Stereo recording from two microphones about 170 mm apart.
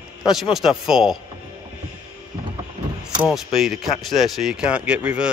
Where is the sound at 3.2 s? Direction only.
Centre (ahead or behind).